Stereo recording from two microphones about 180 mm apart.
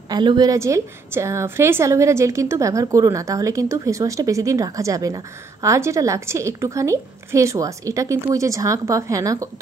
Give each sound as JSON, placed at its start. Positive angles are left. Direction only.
{"t": 0.1, "sound": "a woman's voice", "side_deg": -25}